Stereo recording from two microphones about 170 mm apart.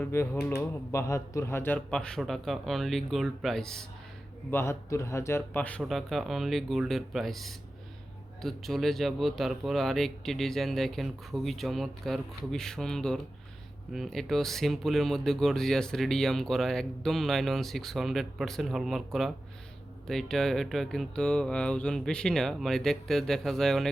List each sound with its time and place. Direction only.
0.0 s speech: 10° left (ahead or behind)
4.5 s a man's voice: 15° left (ahead or behind)